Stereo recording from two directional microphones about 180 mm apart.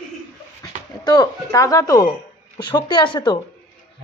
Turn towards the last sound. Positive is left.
turn(degrees=25)  # may be behind; listen again after turning